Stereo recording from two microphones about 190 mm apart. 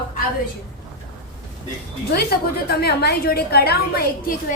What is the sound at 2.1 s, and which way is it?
A woman's voice, 55° left (ahead or behind).